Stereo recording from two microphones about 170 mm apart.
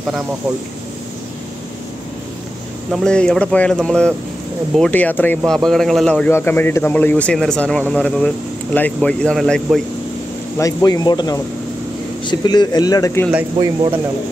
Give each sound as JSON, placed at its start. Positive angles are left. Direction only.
{"t": 2.9, "sound": "a man's voice", "side_deg": 5}
{"t": 10.6, "sound": "speech", "side_deg": 20}